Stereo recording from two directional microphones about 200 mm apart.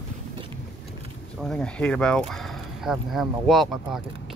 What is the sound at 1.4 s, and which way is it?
Speech, 5° left (ahead or behind).